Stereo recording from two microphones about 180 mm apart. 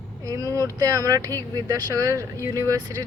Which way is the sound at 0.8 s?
20° right (ahead or behind).